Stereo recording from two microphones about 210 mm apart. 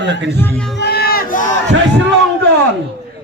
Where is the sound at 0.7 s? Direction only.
50° left (ahead or behind).